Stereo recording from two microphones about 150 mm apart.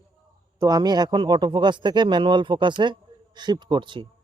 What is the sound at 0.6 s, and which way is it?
Speech, 25° right (ahead or behind).